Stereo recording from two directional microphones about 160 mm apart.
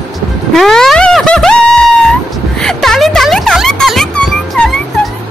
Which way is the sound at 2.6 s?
5° left (ahead or behind).